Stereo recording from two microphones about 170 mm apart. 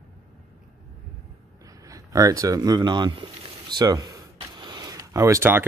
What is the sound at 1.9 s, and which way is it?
Speech, 20° right (ahead or behind).